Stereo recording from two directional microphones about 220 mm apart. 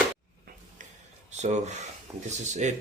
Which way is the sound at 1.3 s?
30° right (ahead or behind).